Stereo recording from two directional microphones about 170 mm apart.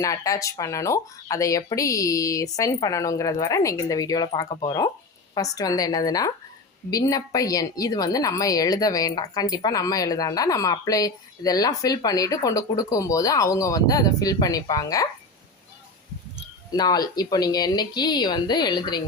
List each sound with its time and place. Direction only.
0.0 s a woman's voice: 20° left (ahead or behind)
16.7 s a woman's voice: 25° left (ahead or behind)